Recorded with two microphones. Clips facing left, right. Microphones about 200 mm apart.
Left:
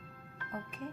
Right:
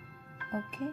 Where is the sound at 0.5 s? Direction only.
30° right (ahead or behind).